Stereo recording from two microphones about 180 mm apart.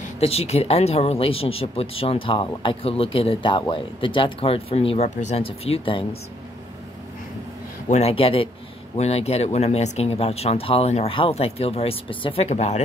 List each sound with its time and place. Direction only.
0.2 s speech: 35° left (ahead or behind)
7.9 s speech: 35° left (ahead or behind)